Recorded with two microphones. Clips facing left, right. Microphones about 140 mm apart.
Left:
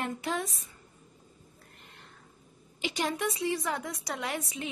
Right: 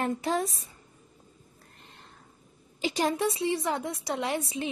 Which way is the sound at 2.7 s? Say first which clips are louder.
Right 4 dB; 40° right (ahead or behind).